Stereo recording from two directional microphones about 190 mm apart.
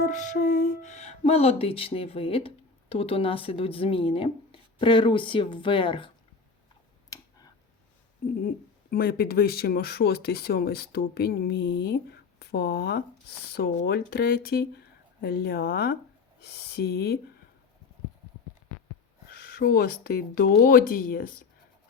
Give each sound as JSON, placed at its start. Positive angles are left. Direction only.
{"t": 0.0, "sound": "speech", "side_deg": 40}
{"t": 7.1, "sound": "a sound", "side_deg": 20}
{"t": 8.4, "sound": "speech", "side_deg": 50}
{"t": 19.3, "sound": "speech", "side_deg": 55}